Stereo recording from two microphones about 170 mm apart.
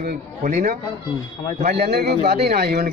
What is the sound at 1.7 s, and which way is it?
A man's voice, 70° right (ahead or behind).